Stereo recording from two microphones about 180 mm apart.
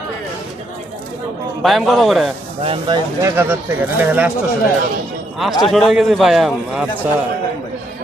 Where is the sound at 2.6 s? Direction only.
30° right (ahead or behind).